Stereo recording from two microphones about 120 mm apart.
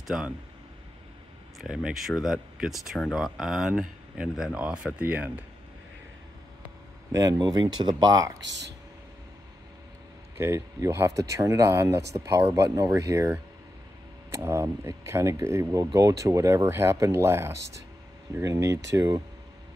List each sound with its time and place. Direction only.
0.0 s speech: 5° right (ahead or behind)
1.6 s speech: 5° right (ahead or behind)
7.1 s speech: 30° right (ahead or behind)
10.4 s speech: 20° right (ahead or behind)
14.3 s speech: 20° right (ahead or behind)